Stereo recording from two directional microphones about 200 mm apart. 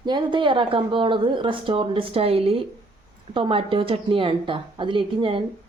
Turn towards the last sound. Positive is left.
turn(degrees=-25)  # may be behind; listen again after turning